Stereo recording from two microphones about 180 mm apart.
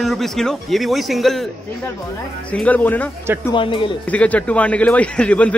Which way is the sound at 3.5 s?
25° left (ahead or behind).